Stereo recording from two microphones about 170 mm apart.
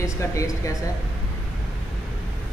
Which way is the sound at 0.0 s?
20° left (ahead or behind).